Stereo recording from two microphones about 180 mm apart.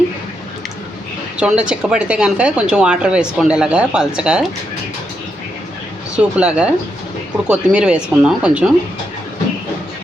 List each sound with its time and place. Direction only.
1.4 s speech: 5° right (ahead or behind)
6.1 s speech: 5° right (ahead or behind)